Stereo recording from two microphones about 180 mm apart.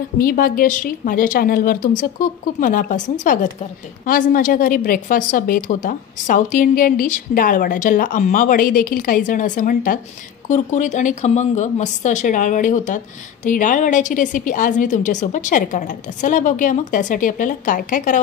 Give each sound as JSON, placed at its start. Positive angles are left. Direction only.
{"t": 0.2, "sound": "a woman's voice", "side_deg": 55}